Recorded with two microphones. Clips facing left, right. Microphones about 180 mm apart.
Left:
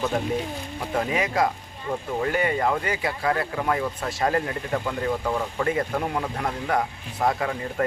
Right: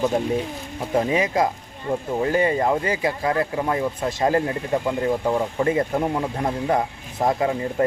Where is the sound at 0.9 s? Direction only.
25° right (ahead or behind).